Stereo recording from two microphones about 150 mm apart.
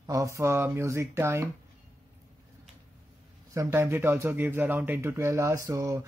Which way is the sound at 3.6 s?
15° right (ahead or behind).